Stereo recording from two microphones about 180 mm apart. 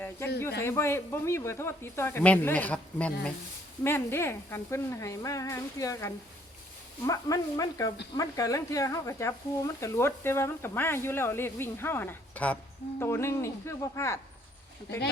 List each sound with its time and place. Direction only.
0.6 s speech: 15° left (ahead or behind)